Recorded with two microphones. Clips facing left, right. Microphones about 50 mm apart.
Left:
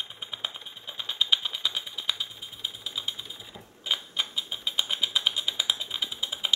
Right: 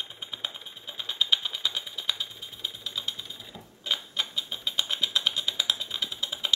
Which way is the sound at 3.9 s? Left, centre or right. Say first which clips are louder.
Even; centre.